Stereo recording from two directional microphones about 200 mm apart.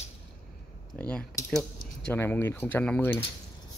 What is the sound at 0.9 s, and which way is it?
Speech, 5° left (ahead or behind).